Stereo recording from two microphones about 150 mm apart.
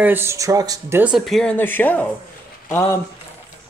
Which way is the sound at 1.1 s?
Centre (ahead or behind).